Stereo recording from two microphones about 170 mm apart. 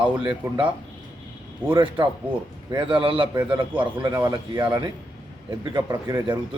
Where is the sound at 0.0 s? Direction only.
30° right (ahead or behind).